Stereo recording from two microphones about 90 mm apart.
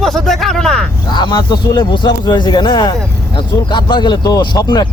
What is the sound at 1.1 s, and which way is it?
A man's voice, 55° left (ahead or behind).